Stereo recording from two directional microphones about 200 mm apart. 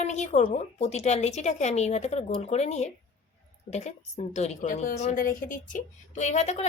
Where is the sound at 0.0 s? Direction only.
35° left (ahead or behind).